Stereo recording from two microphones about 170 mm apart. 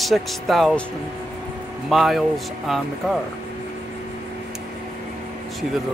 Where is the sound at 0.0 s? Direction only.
Centre (ahead or behind).